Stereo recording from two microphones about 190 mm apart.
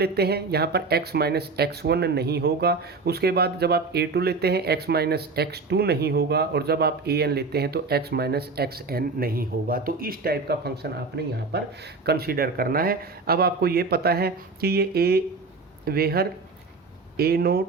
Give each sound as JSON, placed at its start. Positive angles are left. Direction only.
{"t": 0.0, "sound": "speech", "side_deg": -55}